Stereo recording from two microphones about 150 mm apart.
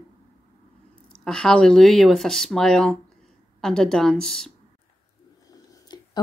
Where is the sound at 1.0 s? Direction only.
5° left (ahead or behind).